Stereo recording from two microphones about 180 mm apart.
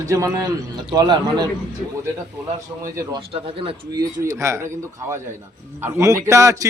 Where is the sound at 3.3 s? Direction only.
25° right (ahead or behind).